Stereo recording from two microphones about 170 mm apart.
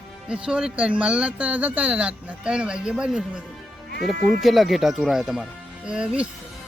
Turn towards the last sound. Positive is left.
turn(degrees=-5)  # may be behind; listen again after turning